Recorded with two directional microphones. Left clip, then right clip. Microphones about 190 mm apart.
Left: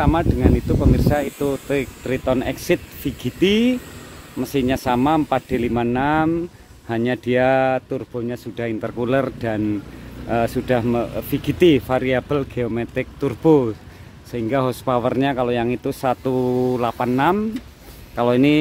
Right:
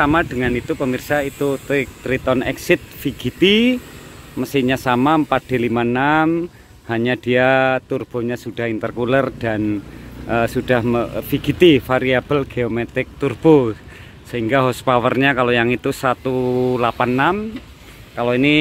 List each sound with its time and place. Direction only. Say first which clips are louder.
0.0 s speech: right 3 dB; centre (ahead or behind)
7.9 s speech: right 4 dB; 15° right (ahead or behind)
8.5 s speech: right 2 dB; centre (ahead or behind)
16.3 s mantra: right 1 dB; 10° left (ahead or behind)
18.1 s mantra: right 1 dB; 20° left (ahead or behind)